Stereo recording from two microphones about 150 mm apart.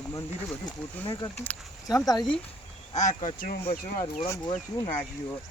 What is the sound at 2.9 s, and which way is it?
Speech, 50° left (ahead or behind).